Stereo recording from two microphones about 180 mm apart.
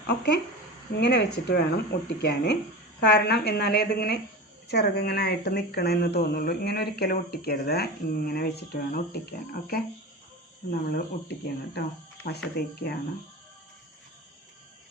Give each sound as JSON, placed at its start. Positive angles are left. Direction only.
{"t": 0.1, "sound": "speech", "side_deg": 65}